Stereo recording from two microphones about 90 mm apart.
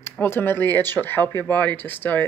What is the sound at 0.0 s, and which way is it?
Speech, 25° left (ahead or behind).